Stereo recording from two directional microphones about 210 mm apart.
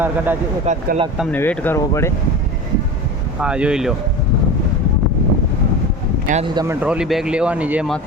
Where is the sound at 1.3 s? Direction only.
10° left (ahead or behind).